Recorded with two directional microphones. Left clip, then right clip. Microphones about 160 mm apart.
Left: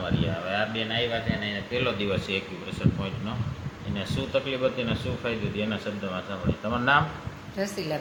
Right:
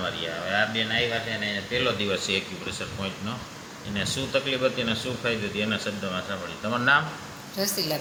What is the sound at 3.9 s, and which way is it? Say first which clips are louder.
A woman's voice: right 2 dB; centre (ahead or behind).